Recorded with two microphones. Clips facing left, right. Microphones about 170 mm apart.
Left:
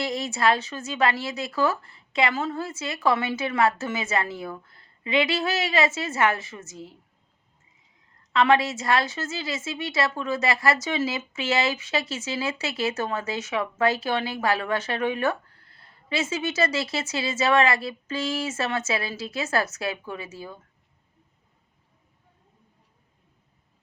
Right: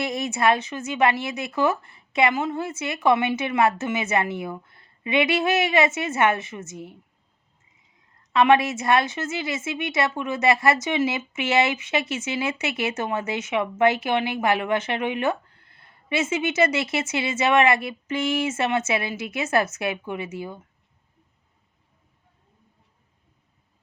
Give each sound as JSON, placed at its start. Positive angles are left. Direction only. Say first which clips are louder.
{"t": 0.0, "sound": "a woman's voice", "louder": "right 2 dB", "side_deg": -20}
{"t": 8.3, "sound": "a woman's voice", "louder": "right 3 dB", "side_deg": -20}